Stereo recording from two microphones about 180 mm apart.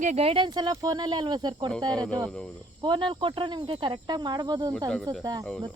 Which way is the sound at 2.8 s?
25° right (ahead or behind).